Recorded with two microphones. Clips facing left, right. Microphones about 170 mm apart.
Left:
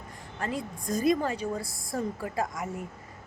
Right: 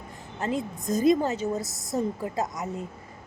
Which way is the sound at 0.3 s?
25° right (ahead or behind).